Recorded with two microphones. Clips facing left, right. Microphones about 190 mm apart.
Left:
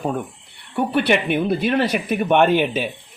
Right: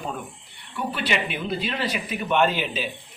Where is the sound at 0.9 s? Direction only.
55° left (ahead or behind).